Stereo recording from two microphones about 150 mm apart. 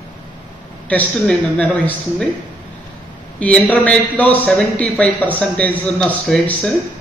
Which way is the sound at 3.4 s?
10° left (ahead or behind).